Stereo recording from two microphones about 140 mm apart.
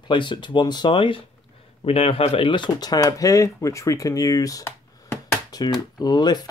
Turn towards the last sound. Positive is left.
turn(degrees=30)  # may be behind; listen again after turning